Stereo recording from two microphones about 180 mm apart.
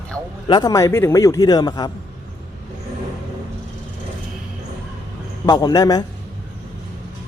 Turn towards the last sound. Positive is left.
turn(degrees=20)  # may be behind; listen again after turning